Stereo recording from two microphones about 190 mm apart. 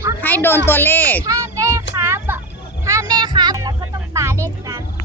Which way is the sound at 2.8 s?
20° right (ahead or behind).